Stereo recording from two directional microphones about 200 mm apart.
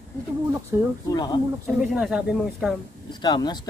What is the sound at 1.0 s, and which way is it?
Speech, 20° left (ahead or behind).